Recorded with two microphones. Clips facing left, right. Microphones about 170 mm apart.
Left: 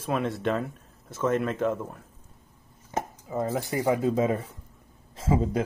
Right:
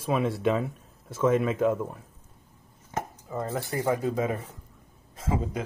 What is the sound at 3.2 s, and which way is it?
Speech, 5° left (ahead or behind).